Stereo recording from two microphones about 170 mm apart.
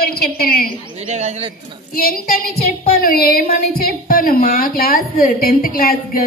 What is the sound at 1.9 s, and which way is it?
A woman's voice, 60° left (ahead or behind).